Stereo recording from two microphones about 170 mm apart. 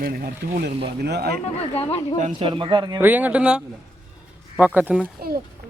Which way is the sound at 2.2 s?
30° right (ahead or behind).